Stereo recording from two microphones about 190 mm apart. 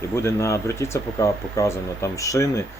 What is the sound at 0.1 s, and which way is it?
Speech, 15° left (ahead or behind).